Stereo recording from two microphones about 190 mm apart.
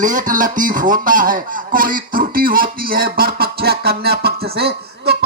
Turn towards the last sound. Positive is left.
turn(degrees=-60)  # may be behind; listen again after turning